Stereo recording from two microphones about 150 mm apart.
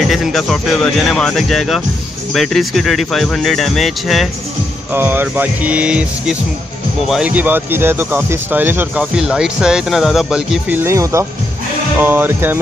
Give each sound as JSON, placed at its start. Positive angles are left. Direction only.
{"t": 0.1, "sound": "speech", "side_deg": 0}
{"t": 4.9, "sound": "speech", "side_deg": -15}